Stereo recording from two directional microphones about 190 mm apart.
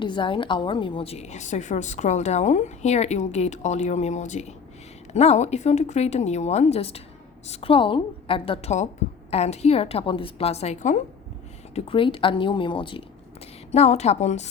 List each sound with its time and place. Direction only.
0.0 s a woman's voice: 25° left (ahead or behind)